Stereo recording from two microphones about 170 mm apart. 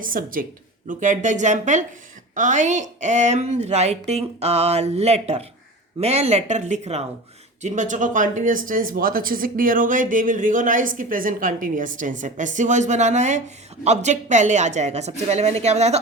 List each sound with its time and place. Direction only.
0.0 s speech: 55° right (ahead or behind)